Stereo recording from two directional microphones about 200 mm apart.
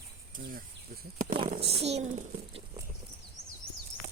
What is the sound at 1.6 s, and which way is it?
A child's voice, 30° right (ahead or behind).